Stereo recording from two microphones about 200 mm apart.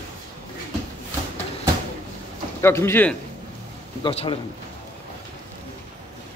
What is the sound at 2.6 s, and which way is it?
Speech, 10° left (ahead or behind).